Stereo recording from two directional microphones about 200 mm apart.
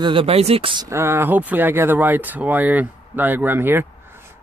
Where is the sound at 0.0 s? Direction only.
25° right (ahead or behind).